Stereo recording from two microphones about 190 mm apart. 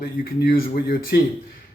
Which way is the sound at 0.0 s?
50° left (ahead or behind).